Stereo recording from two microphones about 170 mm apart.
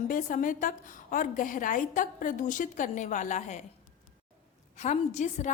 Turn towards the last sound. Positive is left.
turn(degrees=45)  # may be behind; listen again after turning